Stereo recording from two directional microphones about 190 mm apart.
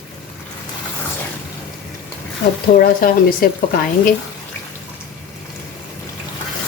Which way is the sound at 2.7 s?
50° left (ahead or behind).